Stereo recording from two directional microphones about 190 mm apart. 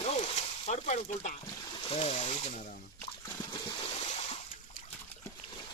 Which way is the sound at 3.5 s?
25° left (ahead or behind).